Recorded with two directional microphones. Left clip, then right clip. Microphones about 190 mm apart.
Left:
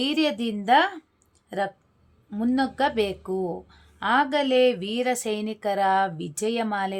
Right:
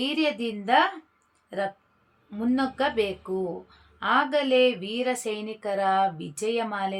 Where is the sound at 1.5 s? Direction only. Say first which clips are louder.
Left 2 dB; 30° left (ahead or behind).